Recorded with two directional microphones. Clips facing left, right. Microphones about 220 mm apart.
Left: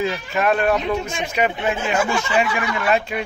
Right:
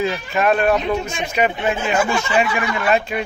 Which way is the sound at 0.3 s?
20° right (ahead or behind).